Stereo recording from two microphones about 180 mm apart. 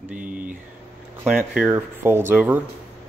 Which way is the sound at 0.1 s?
50° right (ahead or behind).